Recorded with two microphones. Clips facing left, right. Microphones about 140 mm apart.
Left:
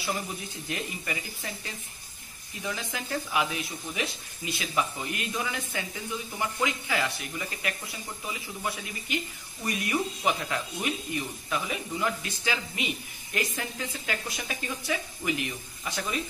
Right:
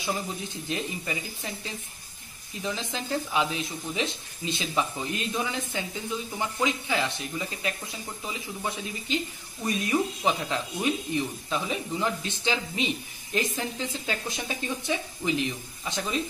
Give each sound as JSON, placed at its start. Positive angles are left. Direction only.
{"t": 0.7, "sound": "speech", "side_deg": -20}